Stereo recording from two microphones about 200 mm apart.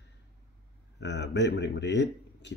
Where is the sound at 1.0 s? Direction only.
60° left (ahead or behind).